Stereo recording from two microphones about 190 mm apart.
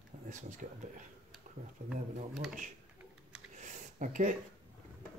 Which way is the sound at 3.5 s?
40° right (ahead or behind).